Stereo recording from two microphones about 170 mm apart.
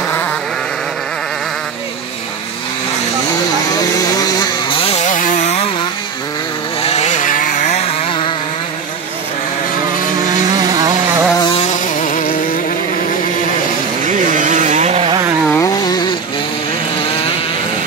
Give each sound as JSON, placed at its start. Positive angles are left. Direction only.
{"t": 3.7, "sound": "chainsaw", "side_deg": 20}
{"t": 6.8, "sound": "chainsaw", "side_deg": 40}
{"t": 10.5, "sound": "vehicle", "side_deg": -25}
{"t": 11.3, "sound": "vehicle", "side_deg": 25}
{"t": 11.6, "sound": "vehicle", "side_deg": 45}
{"t": 14.0, "sound": "a sound", "side_deg": -50}
{"t": 15.5, "sound": "chainsaw", "side_deg": 20}